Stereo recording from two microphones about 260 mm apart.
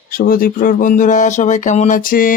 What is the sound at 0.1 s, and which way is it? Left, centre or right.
Speech, left.